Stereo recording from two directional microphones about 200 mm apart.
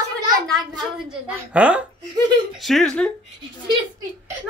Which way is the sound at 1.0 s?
5° right (ahead or behind).